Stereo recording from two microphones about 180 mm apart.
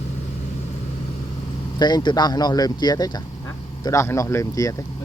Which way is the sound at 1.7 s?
25° left (ahead or behind).